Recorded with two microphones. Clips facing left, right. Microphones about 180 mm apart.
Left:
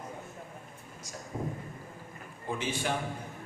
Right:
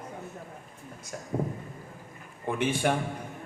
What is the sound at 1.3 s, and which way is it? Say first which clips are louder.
A man's voice: right 5 dB; 60° right (ahead or behind).